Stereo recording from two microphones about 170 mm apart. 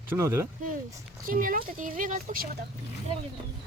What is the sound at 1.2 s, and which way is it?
Speech, 55° right (ahead or behind).